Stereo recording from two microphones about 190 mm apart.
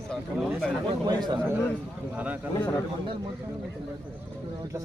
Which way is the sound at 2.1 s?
5° right (ahead or behind).